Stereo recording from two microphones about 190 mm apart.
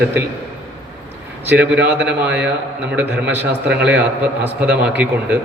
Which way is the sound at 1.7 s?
5° right (ahead or behind).